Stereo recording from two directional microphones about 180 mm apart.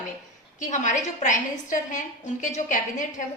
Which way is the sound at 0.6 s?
45° left (ahead or behind).